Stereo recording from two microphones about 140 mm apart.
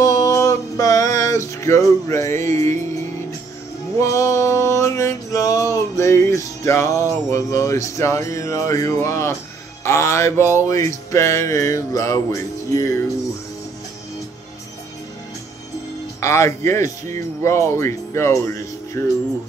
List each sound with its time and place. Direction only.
0.0 s music: 25° left (ahead or behind)
4.0 s male singing: 20° left (ahead or behind)
5.9 s music: 20° left (ahead or behind)
16.2 s music: 20° left (ahead or behind)